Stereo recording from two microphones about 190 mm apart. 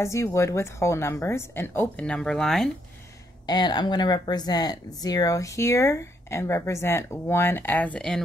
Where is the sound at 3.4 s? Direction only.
20° left (ahead or behind).